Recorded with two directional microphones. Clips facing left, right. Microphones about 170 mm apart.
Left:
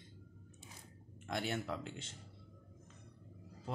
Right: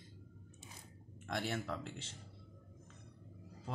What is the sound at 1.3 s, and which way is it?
Speech, centre (ahead or behind).